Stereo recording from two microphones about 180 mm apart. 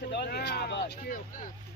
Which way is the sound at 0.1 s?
65° left (ahead or behind).